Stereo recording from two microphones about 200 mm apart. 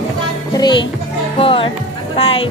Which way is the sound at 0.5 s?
20° left (ahead or behind).